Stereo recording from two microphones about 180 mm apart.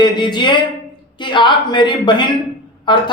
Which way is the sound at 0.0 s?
25° left (ahead or behind).